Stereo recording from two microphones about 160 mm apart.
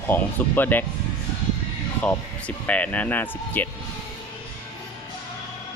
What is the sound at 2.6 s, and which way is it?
Speech, 10° left (ahead or behind).